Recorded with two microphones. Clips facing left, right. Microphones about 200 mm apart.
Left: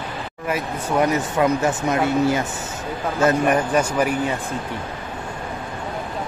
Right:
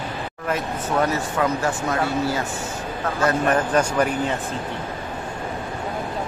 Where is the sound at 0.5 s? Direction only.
15° left (ahead or behind).